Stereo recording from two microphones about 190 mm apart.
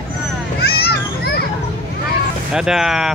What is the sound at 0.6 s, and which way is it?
Children playing, 60° left (ahead or behind).